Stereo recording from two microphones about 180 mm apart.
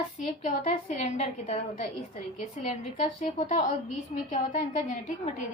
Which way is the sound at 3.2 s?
40° left (ahead or behind).